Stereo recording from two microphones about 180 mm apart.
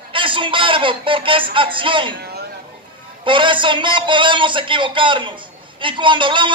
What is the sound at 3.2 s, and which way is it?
A man's voice, 25° right (ahead or behind).